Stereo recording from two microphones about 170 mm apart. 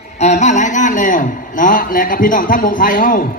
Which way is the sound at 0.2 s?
45° left (ahead or behind).